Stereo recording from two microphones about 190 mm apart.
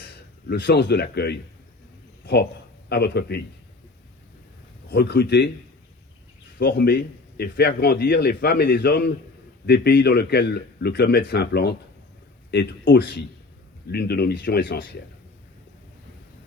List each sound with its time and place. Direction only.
0.4 s a man's voice: 65° left (ahead or behind)
4.9 s a man's voice: 60° left (ahead or behind)
6.6 s a man's voice: 60° left (ahead or behind)